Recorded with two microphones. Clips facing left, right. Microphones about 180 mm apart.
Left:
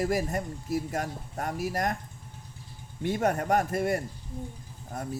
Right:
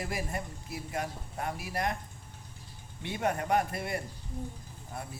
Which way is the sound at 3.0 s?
45° left (ahead or behind).